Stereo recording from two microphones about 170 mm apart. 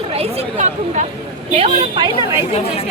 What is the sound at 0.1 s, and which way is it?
Chatter, 35° right (ahead or behind).